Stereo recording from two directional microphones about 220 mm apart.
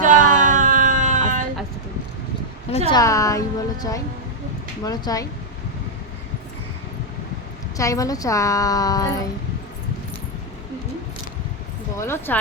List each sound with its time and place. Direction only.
0.0 s a sound: 35° right (ahead or behind)
2.6 s speech: 25° left (ahead or behind)
3.0 s a woman's voice: 15° left (ahead or behind)
7.8 s a woman's voice: 15° left (ahead or behind)
11.9 s a woman's voice: 10° left (ahead or behind)